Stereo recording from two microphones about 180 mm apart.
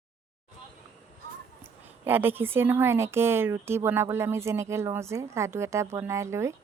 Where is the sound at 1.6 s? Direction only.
10° right (ahead or behind).